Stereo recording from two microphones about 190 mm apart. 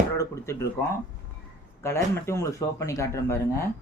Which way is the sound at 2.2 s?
15° left (ahead or behind).